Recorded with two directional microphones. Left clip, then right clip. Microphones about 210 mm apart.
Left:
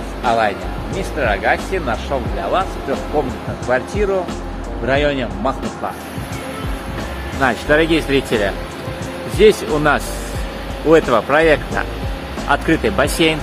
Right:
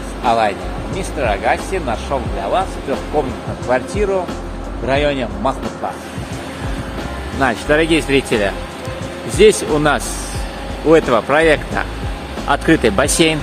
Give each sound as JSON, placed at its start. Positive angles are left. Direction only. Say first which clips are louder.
{"t": 0.2, "sound": "speech", "louder": "right 1 dB", "side_deg": -5}
{"t": 3.6, "sound": "a man's voice", "louder": "right 1 dB", "side_deg": -5}
{"t": 7.3, "sound": "speech", "louder": "even", "side_deg": -15}